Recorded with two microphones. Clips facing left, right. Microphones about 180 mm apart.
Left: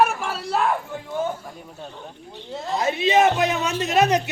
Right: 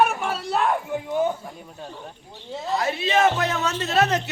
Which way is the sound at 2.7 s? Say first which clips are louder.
Left 3 dB; 20° left (ahead or behind).